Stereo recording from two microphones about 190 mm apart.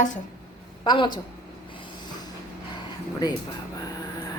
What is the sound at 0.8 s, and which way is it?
Speech, 25° left (ahead or behind).